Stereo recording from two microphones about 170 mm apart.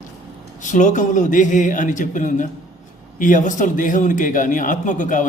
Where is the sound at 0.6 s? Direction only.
45° left (ahead or behind).